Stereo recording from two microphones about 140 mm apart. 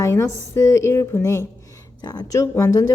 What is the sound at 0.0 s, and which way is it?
A woman's voice, 20° left (ahead or behind).